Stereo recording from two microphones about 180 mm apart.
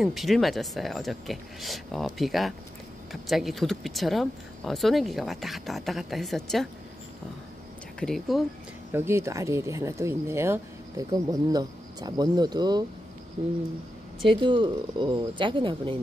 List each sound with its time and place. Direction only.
0.0 s speech: centre (ahead or behind)
8.0 s speech: centre (ahead or behind)
8.9 s speech: 15° right (ahead or behind)
14.2 s speech: 25° right (ahead or behind)